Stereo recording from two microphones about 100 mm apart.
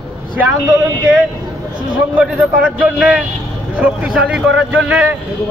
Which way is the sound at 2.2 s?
15° right (ahead or behind).